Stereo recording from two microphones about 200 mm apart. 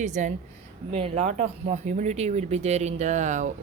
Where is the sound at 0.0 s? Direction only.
40° right (ahead or behind).